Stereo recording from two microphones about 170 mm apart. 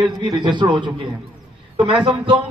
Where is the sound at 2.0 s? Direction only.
30° right (ahead or behind).